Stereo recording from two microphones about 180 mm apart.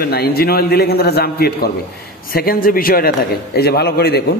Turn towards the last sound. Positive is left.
turn(degrees=60)  # may be behind; listen again after turning